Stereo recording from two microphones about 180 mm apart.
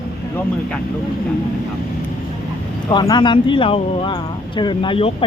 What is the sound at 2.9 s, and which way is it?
Speech, 25° left (ahead or behind).